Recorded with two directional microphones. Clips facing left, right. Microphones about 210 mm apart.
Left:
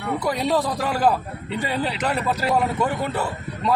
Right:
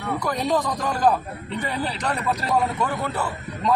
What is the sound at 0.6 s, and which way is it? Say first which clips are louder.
Speech: left 1 dB; 5° left (ahead or behind).